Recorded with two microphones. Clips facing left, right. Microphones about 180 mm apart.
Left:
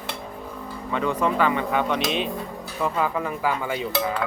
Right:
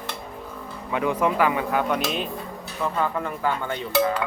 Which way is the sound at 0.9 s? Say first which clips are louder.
Right 1 dB; 10° right (ahead or behind).